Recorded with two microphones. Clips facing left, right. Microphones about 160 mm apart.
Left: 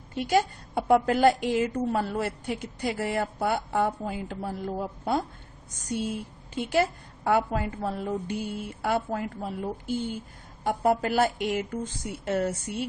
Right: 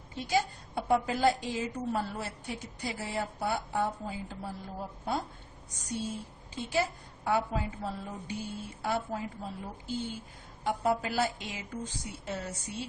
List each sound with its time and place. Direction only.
0.1 s a woman's voice: 65° left (ahead or behind)
6.5 s a woman's voice: 65° left (ahead or behind)